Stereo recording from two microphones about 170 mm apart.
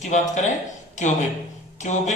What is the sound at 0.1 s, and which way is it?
Speech, 40° left (ahead or behind).